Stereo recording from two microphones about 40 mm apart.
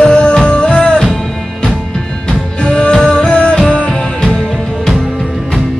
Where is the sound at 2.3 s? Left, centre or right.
Left.